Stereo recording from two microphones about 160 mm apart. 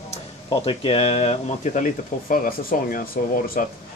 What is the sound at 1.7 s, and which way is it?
Speech, 55° left (ahead or behind).